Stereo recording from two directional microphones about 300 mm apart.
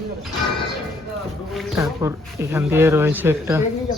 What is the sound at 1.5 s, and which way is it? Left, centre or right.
Speech, centre.